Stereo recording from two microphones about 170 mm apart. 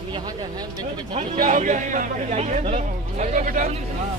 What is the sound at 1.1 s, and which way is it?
A man's voice, 40° right (ahead or behind).